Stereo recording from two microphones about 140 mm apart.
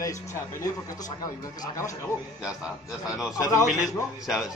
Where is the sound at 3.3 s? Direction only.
25° left (ahead or behind).